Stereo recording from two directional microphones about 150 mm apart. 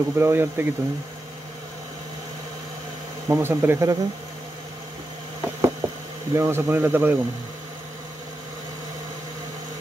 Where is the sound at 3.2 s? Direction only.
15° right (ahead or behind).